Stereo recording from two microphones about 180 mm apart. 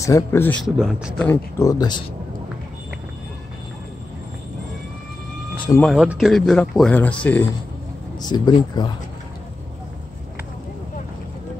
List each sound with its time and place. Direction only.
0.0 s speech: 15° left (ahead or behind)
0.7 s speech: 5° right (ahead or behind)
1.2 s speech: 15° left (ahead or behind)
5.8 s speech: centre (ahead or behind)
8.2 s speech: 25° left (ahead or behind)